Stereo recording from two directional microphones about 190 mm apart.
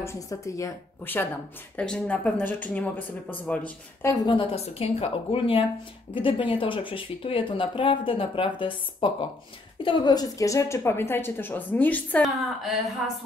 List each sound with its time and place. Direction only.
0.0 s a woman's voice: 15° left (ahead or behind); by 13.1 s centre (ahead or behind)